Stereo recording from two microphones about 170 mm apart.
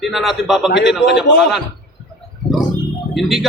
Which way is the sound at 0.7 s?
90° left.